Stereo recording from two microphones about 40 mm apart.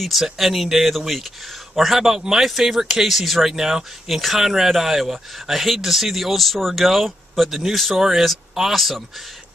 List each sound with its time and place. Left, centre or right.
0.0 s speech: centre